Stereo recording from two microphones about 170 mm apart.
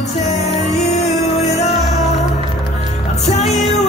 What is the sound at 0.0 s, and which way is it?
Music, 40° left (ahead or behind).